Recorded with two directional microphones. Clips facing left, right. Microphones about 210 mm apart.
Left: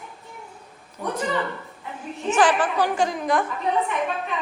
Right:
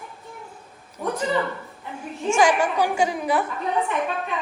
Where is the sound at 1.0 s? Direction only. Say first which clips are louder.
Right 2 dB; 5° right (ahead or behind).